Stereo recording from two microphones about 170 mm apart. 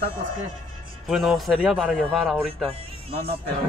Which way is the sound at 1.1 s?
Centre (ahead or behind).